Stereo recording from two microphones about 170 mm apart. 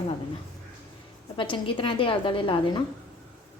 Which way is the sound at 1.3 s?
30° left (ahead or behind).